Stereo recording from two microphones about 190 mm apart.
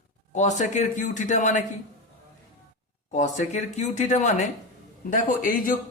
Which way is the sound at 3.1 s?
40° left (ahead or behind).